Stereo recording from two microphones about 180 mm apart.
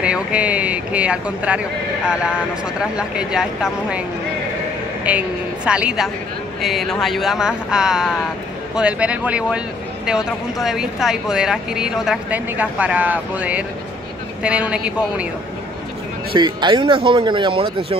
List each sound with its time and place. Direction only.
0.0 s speech: 5° right (ahead or behind)
5.1 s speech: 5° right (ahead or behind)
16.3 s speech: 25° right (ahead or behind)